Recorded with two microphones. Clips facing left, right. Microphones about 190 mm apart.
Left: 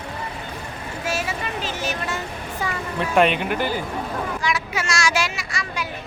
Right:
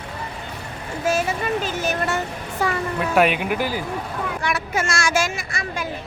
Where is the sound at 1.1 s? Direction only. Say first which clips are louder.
Right 6 dB; 45° right (ahead or behind).